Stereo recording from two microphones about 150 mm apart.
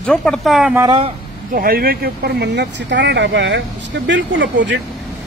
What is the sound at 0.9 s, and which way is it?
Speech, 35° right (ahead or behind).